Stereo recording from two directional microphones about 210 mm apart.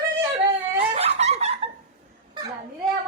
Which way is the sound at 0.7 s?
30° right (ahead or behind).